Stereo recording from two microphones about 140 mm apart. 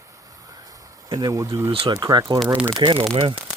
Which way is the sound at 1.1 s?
25° right (ahead or behind).